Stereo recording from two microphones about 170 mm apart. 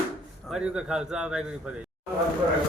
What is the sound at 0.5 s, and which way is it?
Speech, 5° right (ahead or behind).